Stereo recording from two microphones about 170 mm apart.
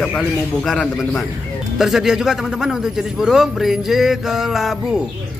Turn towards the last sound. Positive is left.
turn(degrees=0)  # may be behind; listen again after turning